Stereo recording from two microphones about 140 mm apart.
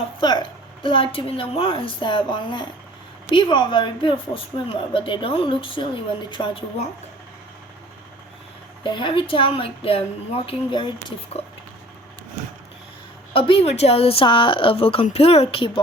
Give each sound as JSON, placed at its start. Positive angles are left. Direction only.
{"t": 0.2, "sound": "speech", "side_deg": 30}
{"t": 8.8, "sound": "speech", "side_deg": 35}
{"t": 13.3, "sound": "speech", "side_deg": 40}